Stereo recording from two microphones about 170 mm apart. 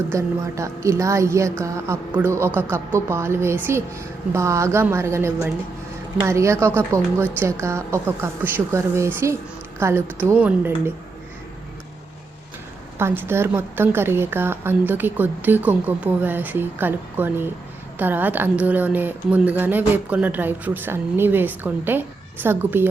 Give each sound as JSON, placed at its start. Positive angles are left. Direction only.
{"t": 0.1, "sound": "a woman's voice", "side_deg": -20}
{"t": 13.0, "sound": "a woman's voice", "side_deg": -15}